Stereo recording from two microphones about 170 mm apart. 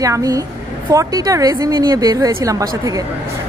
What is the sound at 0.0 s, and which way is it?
A woman's voice, 20° right (ahead or behind).